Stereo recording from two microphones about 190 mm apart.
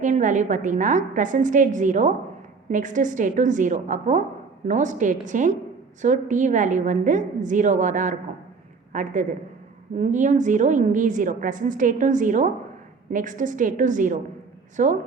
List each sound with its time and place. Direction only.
0.0 s a woman's voice: 40° right (ahead or behind)